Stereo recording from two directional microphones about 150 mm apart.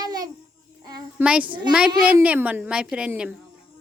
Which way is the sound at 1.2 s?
10° right (ahead or behind).